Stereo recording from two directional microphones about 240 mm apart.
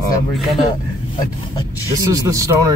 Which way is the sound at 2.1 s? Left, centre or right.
Centre.